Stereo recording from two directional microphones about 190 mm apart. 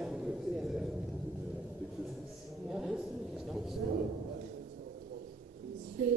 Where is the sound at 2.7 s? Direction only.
5° right (ahead or behind).